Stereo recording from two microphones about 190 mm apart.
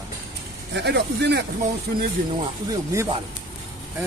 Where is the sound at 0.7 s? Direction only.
65° right (ahead or behind).